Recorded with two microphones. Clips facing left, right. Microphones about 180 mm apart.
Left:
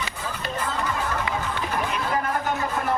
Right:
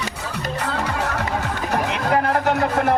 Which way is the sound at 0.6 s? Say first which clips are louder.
Right 3 dB; 80° right.